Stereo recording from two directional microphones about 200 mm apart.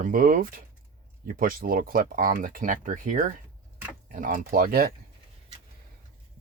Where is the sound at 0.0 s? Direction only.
45° right (ahead or behind).